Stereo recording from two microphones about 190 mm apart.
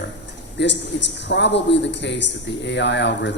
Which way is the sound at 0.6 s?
65° left (ahead or behind).